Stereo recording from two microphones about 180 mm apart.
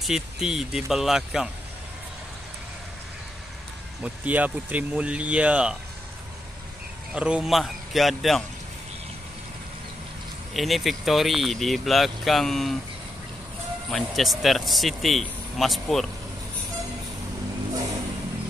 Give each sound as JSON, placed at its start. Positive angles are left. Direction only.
{"t": 0.0, "sound": "speech", "side_deg": -5}
{"t": 4.0, "sound": "speech", "side_deg": -10}
{"t": 7.2, "sound": "speech", "side_deg": -5}
{"t": 10.5, "sound": "speech", "side_deg": 0}
{"t": 13.8, "sound": "speech", "side_deg": 0}